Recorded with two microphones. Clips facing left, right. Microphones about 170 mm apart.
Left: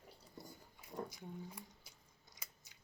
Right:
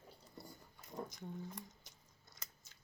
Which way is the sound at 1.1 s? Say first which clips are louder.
Right 2 dB; 10° left (ahead or behind).